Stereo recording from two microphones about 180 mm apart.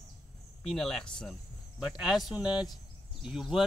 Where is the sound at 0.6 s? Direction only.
Centre (ahead or behind).